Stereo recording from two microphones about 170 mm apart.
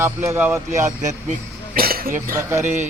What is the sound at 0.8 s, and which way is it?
Speech, 45° right (ahead or behind).